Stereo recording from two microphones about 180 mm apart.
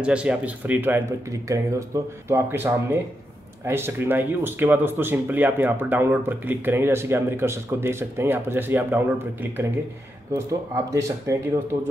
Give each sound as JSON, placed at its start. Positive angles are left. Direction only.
{"t": 0.0, "sound": "speech", "side_deg": -5}